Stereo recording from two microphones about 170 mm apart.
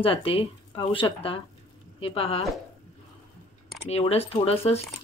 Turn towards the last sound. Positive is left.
turn(degrees=35)  # may be behind; listen again after turning